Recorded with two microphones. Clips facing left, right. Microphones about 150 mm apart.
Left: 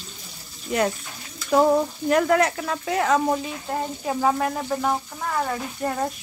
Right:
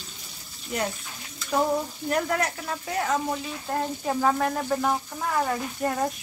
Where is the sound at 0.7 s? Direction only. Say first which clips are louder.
Left 6 dB; 90° left.